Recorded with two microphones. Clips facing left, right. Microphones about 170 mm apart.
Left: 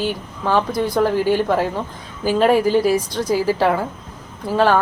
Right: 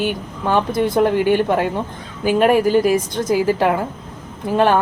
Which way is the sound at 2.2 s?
10° right (ahead or behind).